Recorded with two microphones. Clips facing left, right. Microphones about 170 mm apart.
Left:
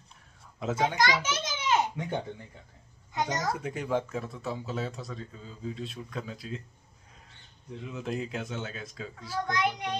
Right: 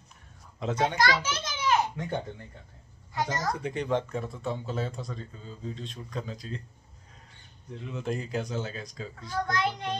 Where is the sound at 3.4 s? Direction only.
5° left (ahead or behind).